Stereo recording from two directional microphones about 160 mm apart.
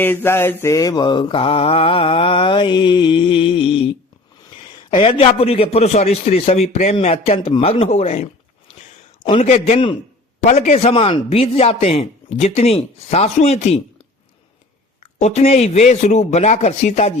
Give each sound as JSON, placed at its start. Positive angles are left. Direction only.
{"t": 0.0, "sound": "mantra", "side_deg": 10}
{"t": 4.9, "sound": "mantra", "side_deg": 35}
{"t": 15.0, "sound": "speech", "side_deg": 40}